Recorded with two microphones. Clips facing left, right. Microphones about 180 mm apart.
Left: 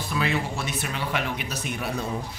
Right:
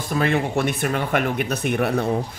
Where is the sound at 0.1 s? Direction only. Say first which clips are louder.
Right 7 dB; 50° right (ahead or behind).